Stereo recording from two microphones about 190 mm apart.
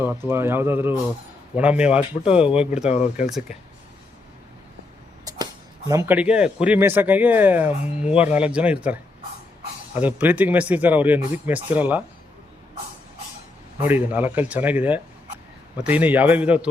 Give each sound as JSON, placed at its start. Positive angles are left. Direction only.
{"t": 0.0, "sound": "speech", "side_deg": -10}
{"t": 2.9, "sound": "speech", "side_deg": 35}
{"t": 3.2, "sound": "speech", "side_deg": 0}
{"t": 5.9, "sound": "speech", "side_deg": -15}
{"t": 10.0, "sound": "speech", "side_deg": -10}
{"t": 13.7, "sound": "speech", "side_deg": -10}